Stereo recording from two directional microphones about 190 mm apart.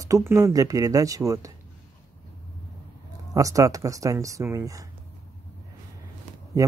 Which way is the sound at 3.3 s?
15° right (ahead or behind).